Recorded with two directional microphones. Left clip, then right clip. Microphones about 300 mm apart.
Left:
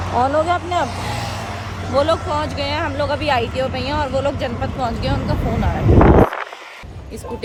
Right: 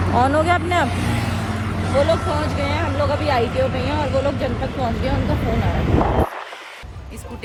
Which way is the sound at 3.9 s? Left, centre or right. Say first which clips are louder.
Left 1 dB; centre.